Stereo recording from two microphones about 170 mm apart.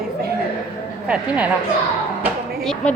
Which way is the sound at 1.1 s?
5° right (ahead or behind).